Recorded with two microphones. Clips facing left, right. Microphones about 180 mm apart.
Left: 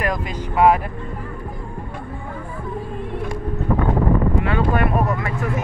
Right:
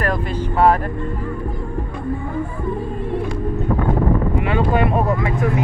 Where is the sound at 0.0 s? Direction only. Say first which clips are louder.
Right 3 dB; 10° left (ahead or behind).